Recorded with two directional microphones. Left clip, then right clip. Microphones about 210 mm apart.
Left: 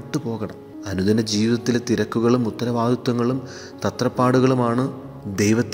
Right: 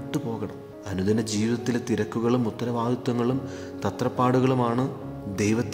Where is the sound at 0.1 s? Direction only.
20° left (ahead or behind).